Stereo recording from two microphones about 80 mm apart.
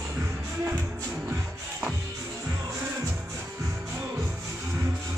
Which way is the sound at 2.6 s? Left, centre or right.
Right.